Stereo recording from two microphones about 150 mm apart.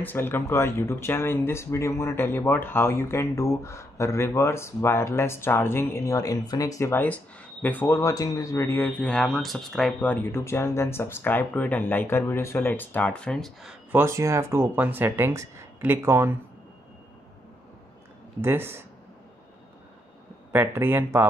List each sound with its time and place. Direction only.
0.0 s speech: 15° left (ahead or behind)
13.9 s speech: 20° right (ahead or behind)
18.4 s speech: 15° right (ahead or behind)
20.5 s speech: 15° right (ahead or behind)